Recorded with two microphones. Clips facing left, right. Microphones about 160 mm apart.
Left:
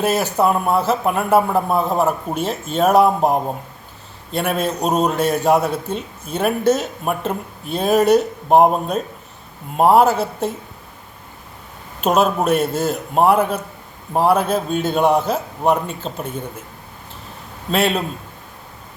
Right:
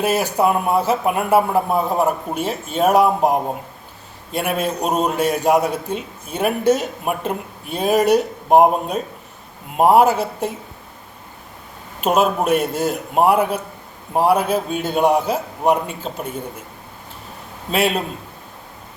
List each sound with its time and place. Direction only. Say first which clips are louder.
0.0 s a man's voice: even; 10° right (ahead or behind)
12.0 s a man's voice: left 1 dB; 10° right (ahead or behind)
17.7 s a man's voice: left 1 dB; 10° right (ahead or behind)